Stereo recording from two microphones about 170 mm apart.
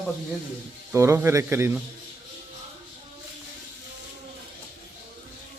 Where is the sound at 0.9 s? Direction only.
15° right (ahead or behind).